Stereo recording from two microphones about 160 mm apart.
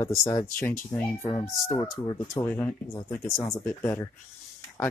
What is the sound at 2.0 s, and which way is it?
Speech, 30° left (ahead or behind).